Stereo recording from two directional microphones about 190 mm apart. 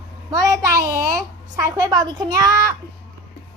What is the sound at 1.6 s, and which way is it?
A woman's voice, 20° right (ahead or behind).